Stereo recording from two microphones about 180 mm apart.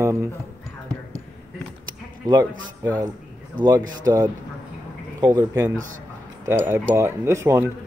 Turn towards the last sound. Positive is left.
turn(degrees=-15)  # may be behind; listen again after turning